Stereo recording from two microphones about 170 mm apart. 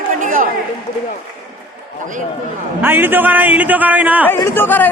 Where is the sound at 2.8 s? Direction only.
10° right (ahead or behind).